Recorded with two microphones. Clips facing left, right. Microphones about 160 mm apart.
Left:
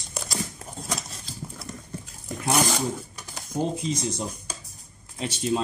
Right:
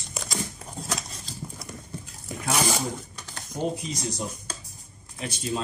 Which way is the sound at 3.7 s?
25° left (ahead or behind).